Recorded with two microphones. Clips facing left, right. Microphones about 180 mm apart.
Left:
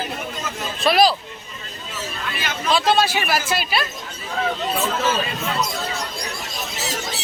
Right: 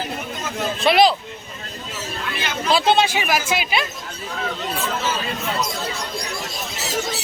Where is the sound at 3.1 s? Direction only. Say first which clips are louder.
Right 1 dB; 15° right (ahead or behind).